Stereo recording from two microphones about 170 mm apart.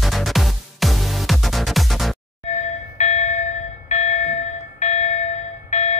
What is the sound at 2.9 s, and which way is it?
Music, 45° left (ahead or behind).